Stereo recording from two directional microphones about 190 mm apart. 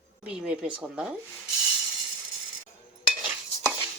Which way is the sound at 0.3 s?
5° right (ahead or behind).